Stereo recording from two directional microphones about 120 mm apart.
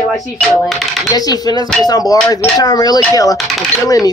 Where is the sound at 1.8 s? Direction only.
35° left (ahead or behind).